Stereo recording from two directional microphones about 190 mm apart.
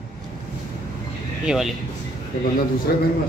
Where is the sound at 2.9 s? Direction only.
55° left (ahead or behind).